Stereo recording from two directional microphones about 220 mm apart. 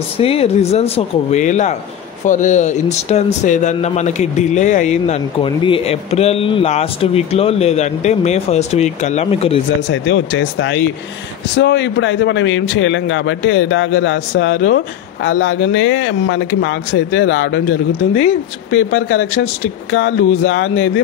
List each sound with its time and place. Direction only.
0.2 s speech: 25° left (ahead or behind)
9.8 s a man's voice: 60° left (ahead or behind)